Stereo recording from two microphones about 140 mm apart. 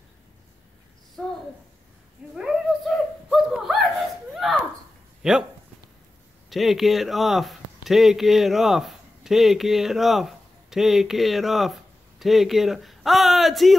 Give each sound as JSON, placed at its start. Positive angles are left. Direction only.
{"t": 1.2, "sound": "a sound", "side_deg": 5}
{"t": 5.2, "sound": "speech", "side_deg": -5}
{"t": 6.5, "sound": "speech", "side_deg": 0}